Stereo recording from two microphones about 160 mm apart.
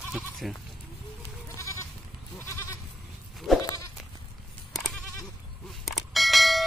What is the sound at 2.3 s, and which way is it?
Goat, 20° left (ahead or behind).